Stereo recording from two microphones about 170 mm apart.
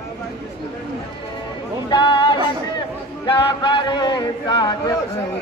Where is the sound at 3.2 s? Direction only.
30° left (ahead or behind).